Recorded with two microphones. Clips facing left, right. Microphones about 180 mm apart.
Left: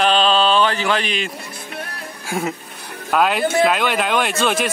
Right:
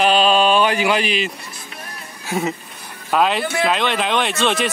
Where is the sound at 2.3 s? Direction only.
Centre (ahead or behind).